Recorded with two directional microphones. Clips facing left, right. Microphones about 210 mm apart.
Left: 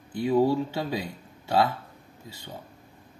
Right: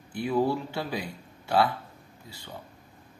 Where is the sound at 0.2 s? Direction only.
20° left (ahead or behind).